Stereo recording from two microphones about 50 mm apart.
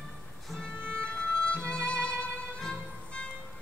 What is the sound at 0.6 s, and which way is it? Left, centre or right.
Music, centre.